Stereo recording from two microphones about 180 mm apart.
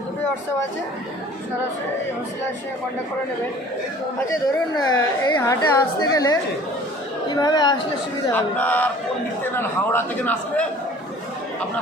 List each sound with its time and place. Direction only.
4.8 s a woman's voice: 20° left (ahead or behind)
8.3 s a man's voice: 10° left (ahead or behind)